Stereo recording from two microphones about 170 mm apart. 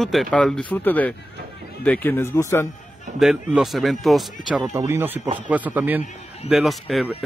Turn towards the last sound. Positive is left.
turn(degrees=0)  # may be behind; listen again after turning